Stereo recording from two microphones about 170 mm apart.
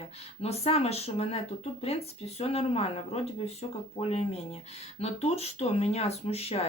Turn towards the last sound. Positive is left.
turn(degrees=35)  # may be behind; listen again after turning